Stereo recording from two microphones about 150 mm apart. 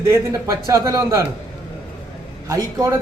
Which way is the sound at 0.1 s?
20° right (ahead or behind).